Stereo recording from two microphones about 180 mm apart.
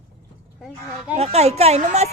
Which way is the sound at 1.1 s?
35° right (ahead or behind).